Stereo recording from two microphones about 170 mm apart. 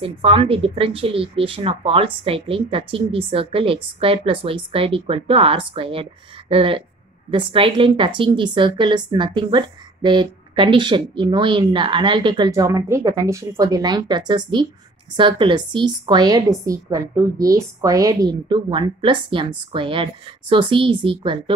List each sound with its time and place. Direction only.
0.0 s speech: 35° right (ahead or behind)